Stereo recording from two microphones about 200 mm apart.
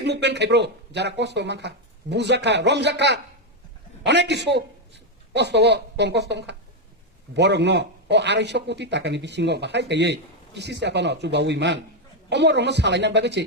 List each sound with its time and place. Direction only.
0.0 s speech: 60° right (ahead or behind)